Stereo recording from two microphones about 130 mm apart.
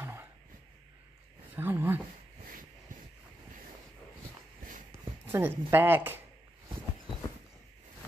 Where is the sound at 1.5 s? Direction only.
15° right (ahead or behind).